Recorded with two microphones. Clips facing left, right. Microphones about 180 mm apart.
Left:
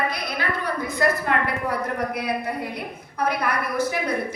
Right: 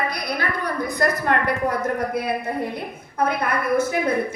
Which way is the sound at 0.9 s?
40° right (ahead or behind).